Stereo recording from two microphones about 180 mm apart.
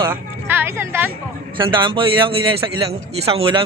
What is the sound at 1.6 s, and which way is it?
A man's voice, 25° right (ahead or behind).